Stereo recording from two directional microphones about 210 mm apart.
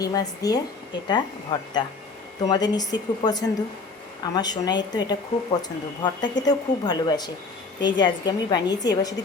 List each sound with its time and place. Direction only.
0.0 s speech: 15° left (ahead or behind)